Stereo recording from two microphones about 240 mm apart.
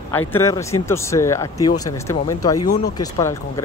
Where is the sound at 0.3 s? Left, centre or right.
Centre.